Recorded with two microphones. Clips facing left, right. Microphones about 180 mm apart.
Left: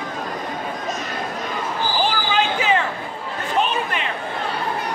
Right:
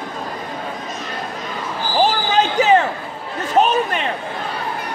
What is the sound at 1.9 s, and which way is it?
Basketball bounce, 40° right (ahead or behind).